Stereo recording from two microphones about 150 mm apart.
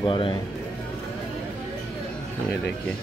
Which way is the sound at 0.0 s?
35° left (ahead or behind).